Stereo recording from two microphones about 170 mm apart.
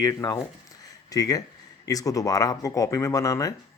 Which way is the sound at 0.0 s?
20° left (ahead or behind).